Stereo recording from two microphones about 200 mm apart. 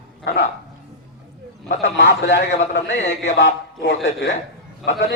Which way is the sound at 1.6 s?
60° left (ahead or behind).